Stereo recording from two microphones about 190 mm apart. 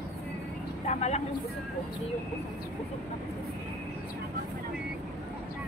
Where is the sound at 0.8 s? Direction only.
35° left (ahead or behind).